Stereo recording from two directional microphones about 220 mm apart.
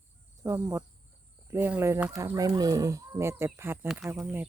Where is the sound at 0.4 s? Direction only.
15° right (ahead or behind).